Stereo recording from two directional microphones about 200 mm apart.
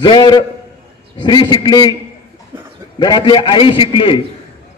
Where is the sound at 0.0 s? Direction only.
20° left (ahead or behind).